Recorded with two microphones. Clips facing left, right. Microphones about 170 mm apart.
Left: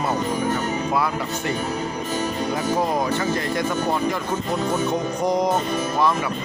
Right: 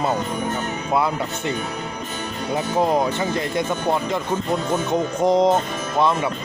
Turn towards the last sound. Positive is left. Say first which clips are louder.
# right 4 dB
turn(degrees=-25)  # may be behind; listen again after turning